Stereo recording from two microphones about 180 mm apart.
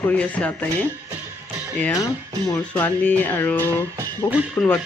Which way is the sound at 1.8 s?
15° left (ahead or behind).